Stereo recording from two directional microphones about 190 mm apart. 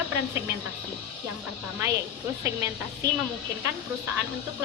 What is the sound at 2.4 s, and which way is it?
Speech, 15° right (ahead or behind).